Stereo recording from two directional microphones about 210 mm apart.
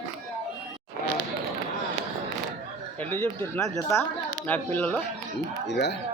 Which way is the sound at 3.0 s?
10° left (ahead or behind).